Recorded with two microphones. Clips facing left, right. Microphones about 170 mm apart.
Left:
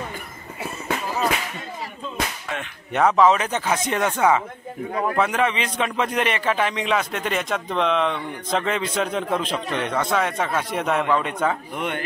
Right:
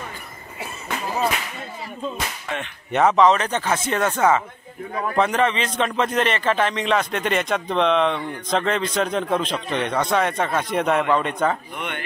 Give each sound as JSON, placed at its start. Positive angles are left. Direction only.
{"t": 2.5, "sound": "a man's voice", "side_deg": 0}